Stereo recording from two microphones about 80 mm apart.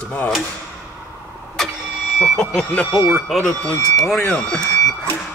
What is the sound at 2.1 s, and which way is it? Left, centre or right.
Speech, centre.